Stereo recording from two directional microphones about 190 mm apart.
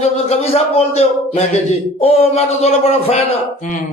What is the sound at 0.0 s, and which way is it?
A man's voice, 35° left (ahead or behind).